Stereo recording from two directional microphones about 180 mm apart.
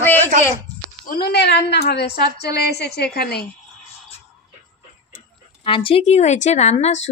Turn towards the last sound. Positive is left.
turn(degrees=35)  # may be behind; listen again after turning